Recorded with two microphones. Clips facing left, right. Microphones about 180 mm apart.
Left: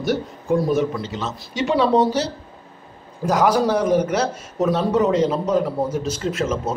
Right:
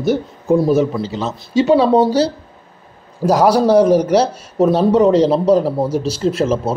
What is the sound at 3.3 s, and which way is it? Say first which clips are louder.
A man's voice: right 6 dB; 35° right (ahead or behind).